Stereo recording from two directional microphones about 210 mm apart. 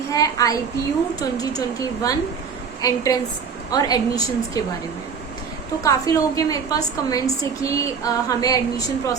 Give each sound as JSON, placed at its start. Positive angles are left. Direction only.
{"t": 0.1, "sound": "a woman's voice", "side_deg": 15}
{"t": 5.8, "sound": "a woman's voice", "side_deg": 15}